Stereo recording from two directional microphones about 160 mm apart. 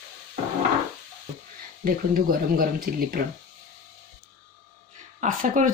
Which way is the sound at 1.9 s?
65° right (ahead or behind).